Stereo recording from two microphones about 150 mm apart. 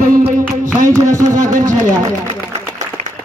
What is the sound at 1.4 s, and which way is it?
Speech, 60° right (ahead or behind).